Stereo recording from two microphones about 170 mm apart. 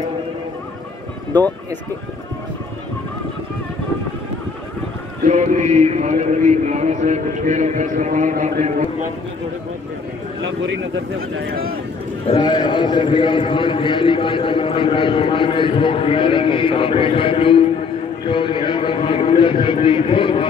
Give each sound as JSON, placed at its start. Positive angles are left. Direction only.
{"t": 5.2, "sound": "a man's voice", "side_deg": -45}
{"t": 10.6, "sound": "speech", "side_deg": -75}
{"t": 12.3, "sound": "a man's voice", "side_deg": 25}